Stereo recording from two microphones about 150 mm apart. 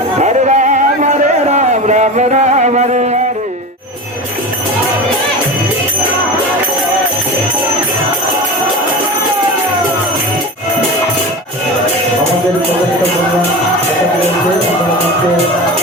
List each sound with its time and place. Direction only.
0.2 s music: 50° right (ahead or behind)